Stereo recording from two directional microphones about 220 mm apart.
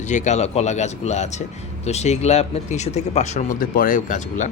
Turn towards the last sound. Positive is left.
turn(degrees=35)  # may be behind; listen again after turning